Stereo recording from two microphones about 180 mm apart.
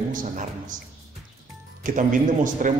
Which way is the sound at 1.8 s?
45° right (ahead or behind).